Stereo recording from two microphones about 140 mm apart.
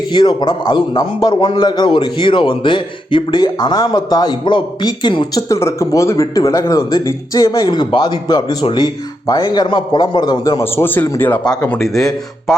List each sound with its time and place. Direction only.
0.1 s a man's voice: 30° left (ahead or behind)
10.6 s a man's voice: 15° left (ahead or behind)
11.6 s a man's voice: 5° left (ahead or behind)